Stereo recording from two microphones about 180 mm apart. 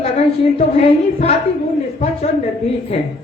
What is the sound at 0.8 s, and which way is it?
Speech, 35° left (ahead or behind).